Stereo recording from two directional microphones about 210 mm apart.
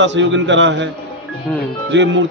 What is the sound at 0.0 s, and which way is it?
Speech, 60° right (ahead or behind).